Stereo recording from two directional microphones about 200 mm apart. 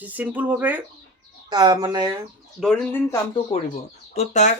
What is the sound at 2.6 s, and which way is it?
Speech, 5° left (ahead or behind).